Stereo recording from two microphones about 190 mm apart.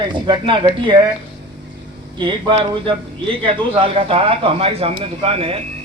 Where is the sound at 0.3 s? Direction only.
25° right (ahead or behind).